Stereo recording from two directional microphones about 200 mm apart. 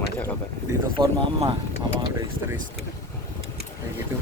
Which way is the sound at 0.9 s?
25° right (ahead or behind).